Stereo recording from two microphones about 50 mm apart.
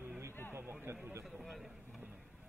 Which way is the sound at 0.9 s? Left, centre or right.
Right.